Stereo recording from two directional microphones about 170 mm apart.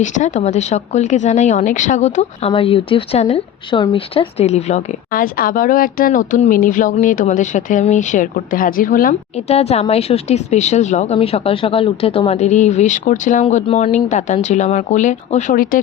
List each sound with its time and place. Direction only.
0.0 s speech: 45° left (ahead or behind)
9.3 s speech: 35° left (ahead or behind); by 15.8 s 55° left (ahead or behind)